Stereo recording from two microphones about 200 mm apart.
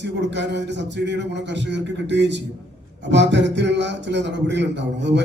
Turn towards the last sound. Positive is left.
turn(degrees=-60)  # may be behind; listen again after turning